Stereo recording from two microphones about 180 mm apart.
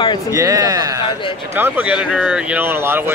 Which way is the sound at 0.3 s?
20° right (ahead or behind).